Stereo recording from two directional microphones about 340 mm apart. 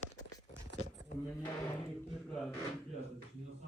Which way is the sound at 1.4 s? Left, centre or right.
Centre.